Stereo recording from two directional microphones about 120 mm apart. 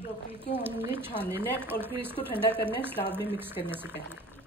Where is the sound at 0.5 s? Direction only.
15° right (ahead or behind).